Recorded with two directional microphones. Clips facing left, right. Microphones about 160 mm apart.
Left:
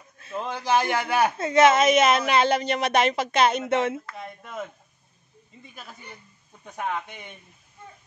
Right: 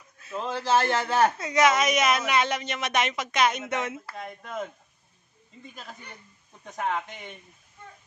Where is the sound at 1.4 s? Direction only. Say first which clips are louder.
Left 5 dB; 25° left (ahead or behind).